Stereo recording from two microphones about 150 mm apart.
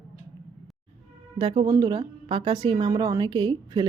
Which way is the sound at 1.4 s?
35° right (ahead or behind).